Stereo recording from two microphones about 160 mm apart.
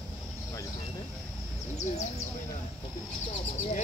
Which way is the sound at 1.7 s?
45° left (ahead or behind).